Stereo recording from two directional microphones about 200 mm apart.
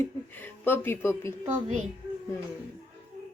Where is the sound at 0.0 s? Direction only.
10° left (ahead or behind).